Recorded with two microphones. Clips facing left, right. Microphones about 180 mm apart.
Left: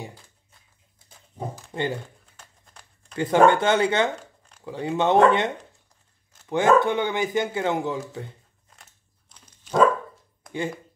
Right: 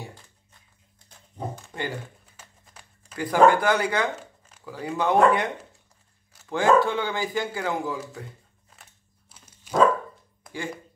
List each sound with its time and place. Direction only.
0.0 s a sound: 10° left (ahead or behind)
1.7 s speech: 25° left (ahead or behind)
2.3 s a sound: 5° right (ahead or behind)
3.2 s a man's voice: 25° left (ahead or behind)
6.5 s a man's voice: 20° left (ahead or behind)
8.6 s dog: centre (ahead or behind)